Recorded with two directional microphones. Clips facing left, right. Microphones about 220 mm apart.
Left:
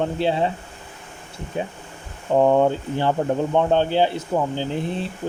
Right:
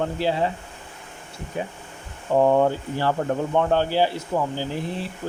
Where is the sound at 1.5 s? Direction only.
25° left (ahead or behind).